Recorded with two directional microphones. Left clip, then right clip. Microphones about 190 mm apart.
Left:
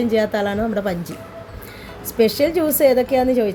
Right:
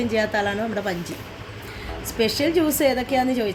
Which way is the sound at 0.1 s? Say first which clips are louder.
Left 2 dB; 55° left (ahead or behind).